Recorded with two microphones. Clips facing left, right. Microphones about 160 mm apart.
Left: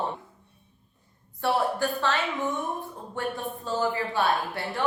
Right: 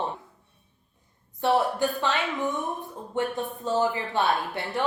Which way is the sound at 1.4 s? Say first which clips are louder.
Right 2 dB; 20° right (ahead or behind).